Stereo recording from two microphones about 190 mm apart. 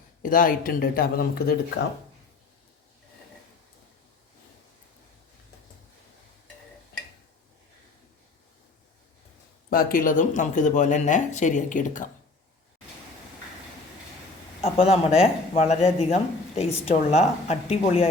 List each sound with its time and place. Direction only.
0.2 s speech: 45° left (ahead or behind)
9.6 s speech: 50° left (ahead or behind)
14.6 s speech: 35° left (ahead or behind)